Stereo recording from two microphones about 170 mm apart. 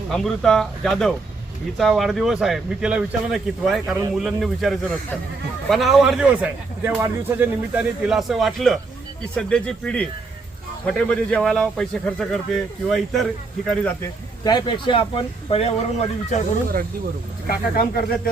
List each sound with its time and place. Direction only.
0.1 s speech: 5° left (ahead or behind)
13.8 s speech: 20° left (ahead or behind); by 16.4 s 35° left (ahead or behind)
17.7 s speech: 60° left (ahead or behind)